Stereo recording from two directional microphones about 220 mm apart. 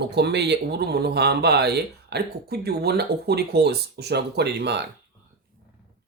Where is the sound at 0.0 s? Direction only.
50° right (ahead or behind).